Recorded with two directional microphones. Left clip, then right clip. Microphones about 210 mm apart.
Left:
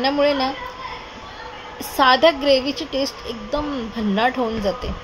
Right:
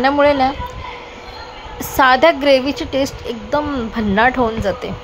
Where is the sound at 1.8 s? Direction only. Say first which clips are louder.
Right 3 dB; 15° right (ahead or behind).